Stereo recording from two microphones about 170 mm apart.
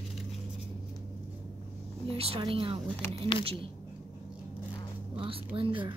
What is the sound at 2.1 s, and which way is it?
Speech, 35° right (ahead or behind).